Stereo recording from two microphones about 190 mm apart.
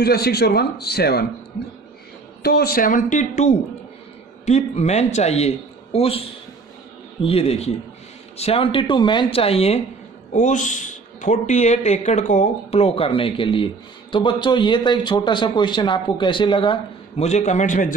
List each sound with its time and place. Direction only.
0.0 s a man's voice: 55° left (ahead or behind)
2.4 s a man's voice: 55° left (ahead or behind); by 16.7 s 25° left (ahead or behind)
17.2 s speech: 35° left (ahead or behind)